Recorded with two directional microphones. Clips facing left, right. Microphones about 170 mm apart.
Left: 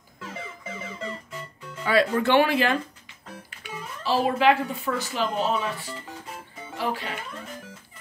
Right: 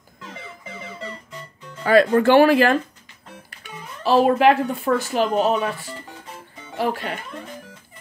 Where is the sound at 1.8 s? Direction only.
45° right (ahead or behind).